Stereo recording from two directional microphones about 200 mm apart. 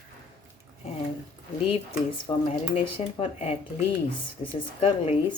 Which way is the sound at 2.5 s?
30° left (ahead or behind).